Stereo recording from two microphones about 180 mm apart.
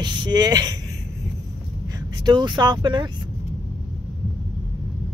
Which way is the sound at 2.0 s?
25° right (ahead or behind).